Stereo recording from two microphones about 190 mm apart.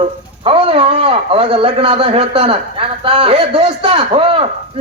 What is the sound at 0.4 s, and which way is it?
A man's voice, 30° right (ahead or behind).